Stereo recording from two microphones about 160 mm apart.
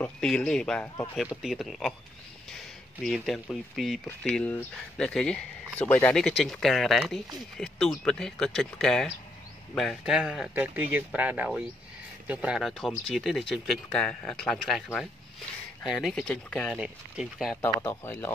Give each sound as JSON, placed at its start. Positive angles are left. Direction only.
{"t": 0.0, "sound": "speech", "side_deg": 5}
{"t": 3.0, "sound": "speech", "side_deg": 0}
{"t": 15.9, "sound": "speech", "side_deg": 5}
{"t": 16.7, "sound": "speech", "side_deg": -5}
{"t": 17.6, "sound": "speech", "side_deg": 20}